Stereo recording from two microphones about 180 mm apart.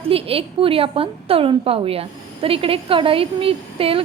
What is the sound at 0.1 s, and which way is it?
A woman's voice, 30° right (ahead or behind).